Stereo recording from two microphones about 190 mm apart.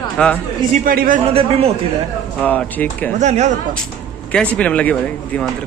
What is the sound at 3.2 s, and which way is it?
Speech, 35° right (ahead or behind).